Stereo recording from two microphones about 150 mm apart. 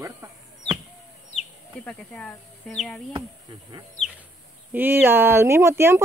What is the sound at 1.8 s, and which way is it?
Speech, 5° left (ahead or behind).